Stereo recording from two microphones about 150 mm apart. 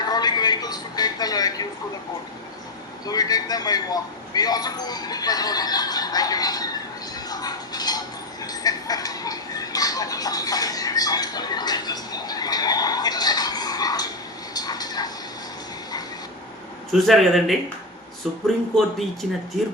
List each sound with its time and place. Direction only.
0.1 s a sound: 25° left (ahead or behind)
3.1 s a man's voice: 25° left (ahead or behind)
7.3 s a sound: 25° left (ahead or behind)
14.5 s vehicle: 25° left (ahead or behind)
16.9 s speech: centre (ahead or behind)
18.4 s speech: centre (ahead or behind)